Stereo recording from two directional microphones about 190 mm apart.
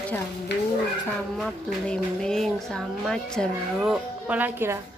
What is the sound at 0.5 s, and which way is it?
Speech, 65° left (ahead or behind).